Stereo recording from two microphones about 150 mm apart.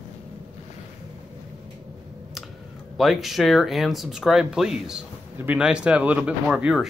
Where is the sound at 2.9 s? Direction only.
Centre (ahead or behind).